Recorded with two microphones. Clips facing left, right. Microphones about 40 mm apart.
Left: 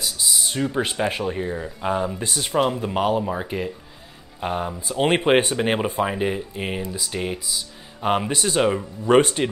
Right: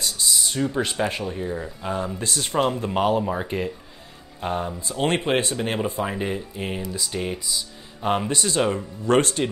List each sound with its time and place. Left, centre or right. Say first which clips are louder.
0.0 s a sound: even; centre
0.5 s speech: left 2 dB; centre
1.2 s speech: left 3 dB; left
1.5 s speech: left 3 dB; centre
4.4 s speech: left 1 dB; centre
5.9 s speech: left 3 dB; centre
6.9 s speech: left 1 dB; centre